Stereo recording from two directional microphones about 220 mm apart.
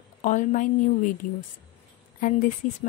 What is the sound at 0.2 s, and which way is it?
A woman's voice, 35° left (ahead or behind).